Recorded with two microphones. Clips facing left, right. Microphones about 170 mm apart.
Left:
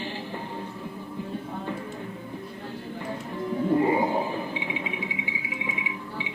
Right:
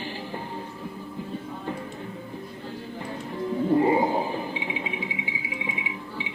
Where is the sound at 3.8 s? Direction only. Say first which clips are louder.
Right 1 dB; 30° right (ahead or behind).